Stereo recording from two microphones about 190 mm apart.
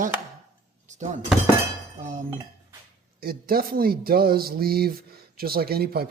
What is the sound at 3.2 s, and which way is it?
Speech, 50° right (ahead or behind).